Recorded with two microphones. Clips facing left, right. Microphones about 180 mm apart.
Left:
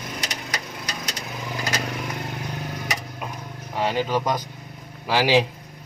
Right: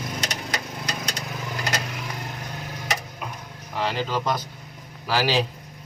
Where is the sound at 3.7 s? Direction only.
15° left (ahead or behind).